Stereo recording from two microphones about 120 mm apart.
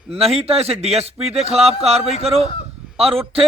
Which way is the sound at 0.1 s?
55° right (ahead or behind).